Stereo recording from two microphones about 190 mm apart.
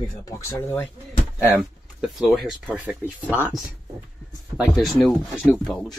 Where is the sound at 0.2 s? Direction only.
15° left (ahead or behind).